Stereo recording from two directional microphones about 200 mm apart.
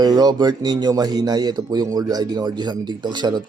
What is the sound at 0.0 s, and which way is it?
Speech, 20° right (ahead or behind).